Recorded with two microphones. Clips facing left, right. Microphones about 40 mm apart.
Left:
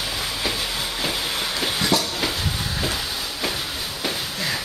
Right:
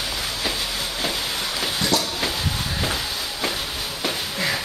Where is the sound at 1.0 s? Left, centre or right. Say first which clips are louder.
Left 1 dB; centre.